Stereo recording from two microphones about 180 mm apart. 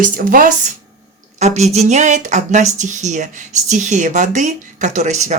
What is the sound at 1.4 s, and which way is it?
Speech, 40° right (ahead or behind).